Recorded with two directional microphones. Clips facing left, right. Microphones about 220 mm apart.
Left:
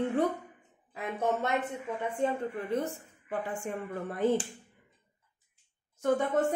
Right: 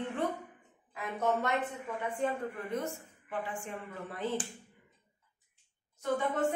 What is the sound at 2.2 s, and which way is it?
Speech, 30° left (ahead or behind).